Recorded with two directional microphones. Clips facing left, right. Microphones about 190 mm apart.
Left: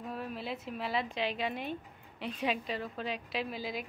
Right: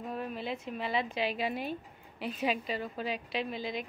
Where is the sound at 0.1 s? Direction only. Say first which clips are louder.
Right 2 dB; centre (ahead or behind).